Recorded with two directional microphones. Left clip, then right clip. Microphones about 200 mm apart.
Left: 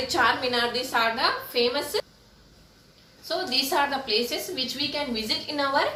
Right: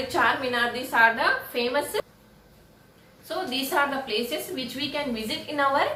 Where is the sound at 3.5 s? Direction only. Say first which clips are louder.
Left 1 dB; 10° left (ahead or behind).